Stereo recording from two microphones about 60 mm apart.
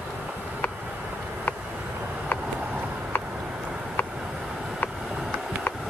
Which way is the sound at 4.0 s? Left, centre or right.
Left.